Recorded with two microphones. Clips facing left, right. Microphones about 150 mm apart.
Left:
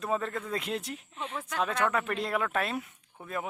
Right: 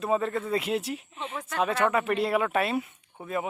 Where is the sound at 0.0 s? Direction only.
5° right (ahead or behind).